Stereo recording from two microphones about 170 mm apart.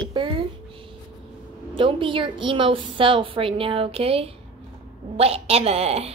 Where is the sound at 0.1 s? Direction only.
30° right (ahead or behind).